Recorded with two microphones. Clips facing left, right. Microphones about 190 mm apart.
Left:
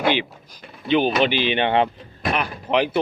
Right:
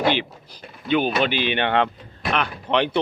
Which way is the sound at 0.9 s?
50° right (ahead or behind).